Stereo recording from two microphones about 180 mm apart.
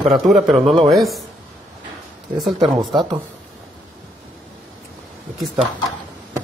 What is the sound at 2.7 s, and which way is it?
Speech, 25° right (ahead or behind).